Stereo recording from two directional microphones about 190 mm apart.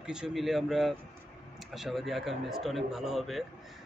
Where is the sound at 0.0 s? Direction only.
5° right (ahead or behind).